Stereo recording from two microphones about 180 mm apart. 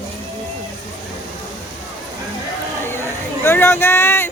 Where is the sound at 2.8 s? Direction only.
15° left (ahead or behind).